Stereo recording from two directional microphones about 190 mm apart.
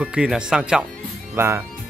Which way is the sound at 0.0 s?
5° right (ahead or behind).